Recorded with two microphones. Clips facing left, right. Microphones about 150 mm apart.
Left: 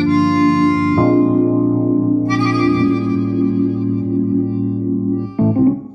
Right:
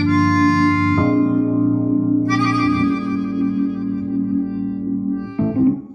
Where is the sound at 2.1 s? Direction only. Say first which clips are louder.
Left 2 dB; 25° left (ahead or behind).